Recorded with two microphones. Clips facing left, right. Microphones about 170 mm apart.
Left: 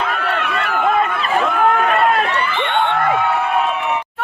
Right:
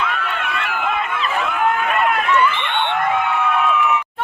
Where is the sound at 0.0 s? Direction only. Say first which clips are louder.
Left 3 dB; 40° left (ahead or behind).